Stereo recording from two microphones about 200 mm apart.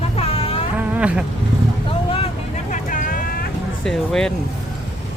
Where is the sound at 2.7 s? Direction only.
40° left (ahead or behind).